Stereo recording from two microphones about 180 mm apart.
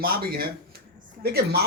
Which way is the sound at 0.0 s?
55° right (ahead or behind).